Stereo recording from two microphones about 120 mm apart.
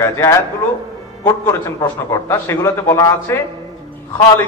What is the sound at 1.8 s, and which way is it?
A man's voice, 25° left (ahead or behind).